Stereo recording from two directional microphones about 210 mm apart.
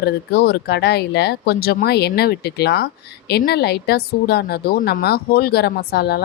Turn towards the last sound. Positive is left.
turn(degrees=50)  # may be behind; listen again after turning